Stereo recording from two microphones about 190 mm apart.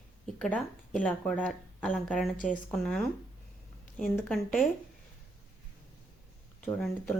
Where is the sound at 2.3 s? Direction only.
45° left (ahead or behind).